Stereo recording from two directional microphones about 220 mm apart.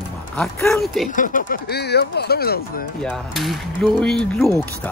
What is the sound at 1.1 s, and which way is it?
Speech, 35° left (ahead or behind).